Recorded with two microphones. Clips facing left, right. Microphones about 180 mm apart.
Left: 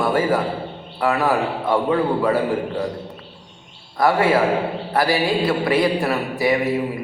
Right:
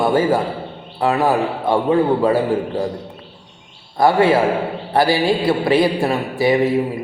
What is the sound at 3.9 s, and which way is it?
A man's voice, 25° right (ahead or behind).